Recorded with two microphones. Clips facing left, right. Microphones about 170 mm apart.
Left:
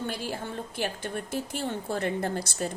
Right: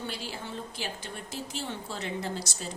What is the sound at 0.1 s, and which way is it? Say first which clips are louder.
A woman's voice: left 4 dB; 50° left (ahead or behind).